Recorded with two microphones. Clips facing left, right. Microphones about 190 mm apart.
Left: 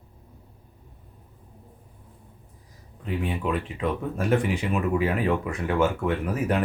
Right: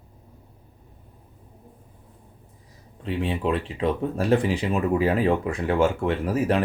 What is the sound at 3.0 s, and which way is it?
Speech, 25° right (ahead or behind).